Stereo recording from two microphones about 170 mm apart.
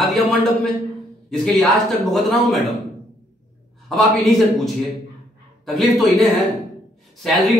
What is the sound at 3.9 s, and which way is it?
A man's voice, centre (ahead or behind).